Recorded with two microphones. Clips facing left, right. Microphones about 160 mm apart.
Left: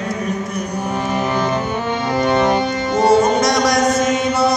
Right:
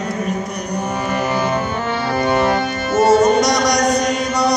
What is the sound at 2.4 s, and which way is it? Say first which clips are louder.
Music: left 1 dB; 15° left (ahead or behind).